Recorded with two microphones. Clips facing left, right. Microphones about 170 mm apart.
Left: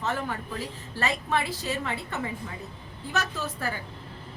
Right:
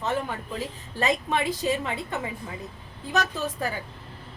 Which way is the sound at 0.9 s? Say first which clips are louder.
Right 3 dB; 20° right (ahead or behind).